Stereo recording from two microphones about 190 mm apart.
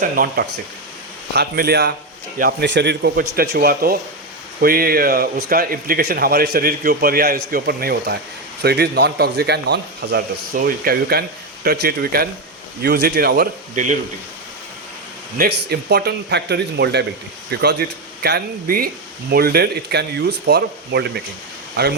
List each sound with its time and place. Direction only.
0.0 s a man's voice: 50° right (ahead or behind)
15.4 s a man's voice: 60° right (ahead or behind)